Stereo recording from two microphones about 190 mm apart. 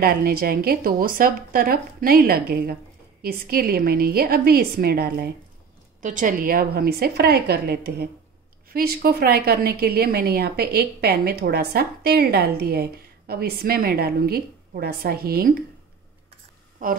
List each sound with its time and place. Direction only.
0.0 s a woman's voice: 50° right (ahead or behind)
6.0 s a woman's voice: 45° right (ahead or behind)